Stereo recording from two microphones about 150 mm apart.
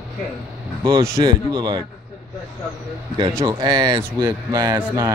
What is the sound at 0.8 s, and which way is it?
Speech, 20° right (ahead or behind).